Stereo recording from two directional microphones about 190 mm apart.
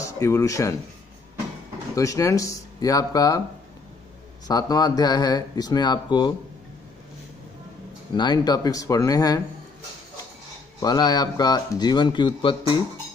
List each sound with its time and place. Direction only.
0.2 s speech: 15° left (ahead or behind)
2.0 s speech: 15° left (ahead or behind)
4.5 s speech: 20° left (ahead or behind)
8.2 s speech: 20° left (ahead or behind)
10.8 s speech: 20° left (ahead or behind)